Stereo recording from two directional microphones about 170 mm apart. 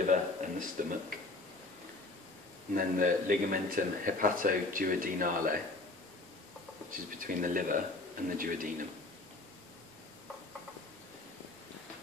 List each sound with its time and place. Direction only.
0.0 s a sound: 50° right (ahead or behind)
2.7 s a man's voice: 55° right (ahead or behind)
6.9 s speech: 55° right (ahead or behind)